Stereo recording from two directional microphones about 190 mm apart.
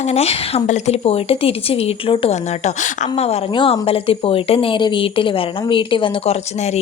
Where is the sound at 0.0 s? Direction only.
35° left (ahead or behind).